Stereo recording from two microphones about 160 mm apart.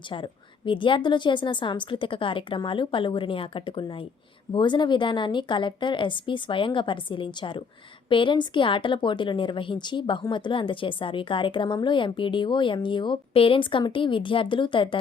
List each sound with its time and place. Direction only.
0.1 s a woman's voice: 30° left (ahead or behind)